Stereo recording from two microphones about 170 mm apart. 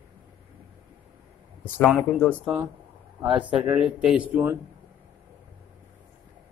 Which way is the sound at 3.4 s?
5° right (ahead or behind).